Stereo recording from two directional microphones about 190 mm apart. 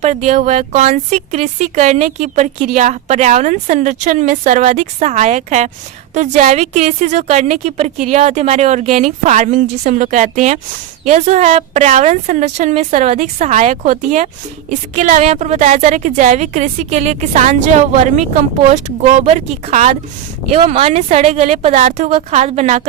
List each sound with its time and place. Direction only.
0.0 s speech: 40° right (ahead or behind)